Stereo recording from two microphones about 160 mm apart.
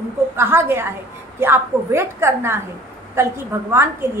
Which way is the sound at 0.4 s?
15° right (ahead or behind).